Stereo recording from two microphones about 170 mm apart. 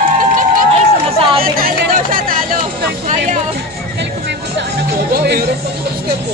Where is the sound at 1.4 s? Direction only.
60° right (ahead or behind).